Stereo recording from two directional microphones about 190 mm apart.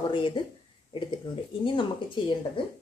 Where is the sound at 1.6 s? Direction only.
25° left (ahead or behind).